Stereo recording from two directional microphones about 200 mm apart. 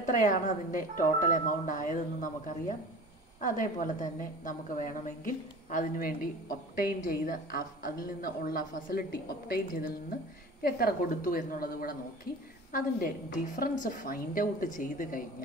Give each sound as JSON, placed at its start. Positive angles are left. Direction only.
{"t": 0.0, "sound": "a woman's voice", "side_deg": 40}